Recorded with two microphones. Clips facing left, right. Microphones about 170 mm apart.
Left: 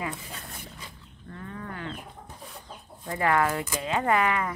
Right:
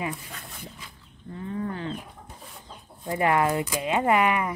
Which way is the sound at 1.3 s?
25° right (ahead or behind).